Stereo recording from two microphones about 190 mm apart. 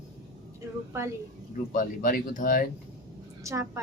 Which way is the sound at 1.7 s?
45° left (ahead or behind).